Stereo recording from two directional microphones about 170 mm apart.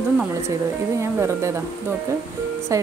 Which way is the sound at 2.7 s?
15° right (ahead or behind).